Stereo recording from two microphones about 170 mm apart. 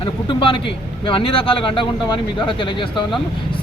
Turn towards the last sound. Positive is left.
turn(degrees=30)  # may be behind; listen again after turning